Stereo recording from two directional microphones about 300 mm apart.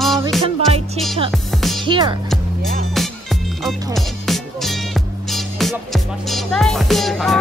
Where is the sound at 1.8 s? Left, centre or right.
Centre.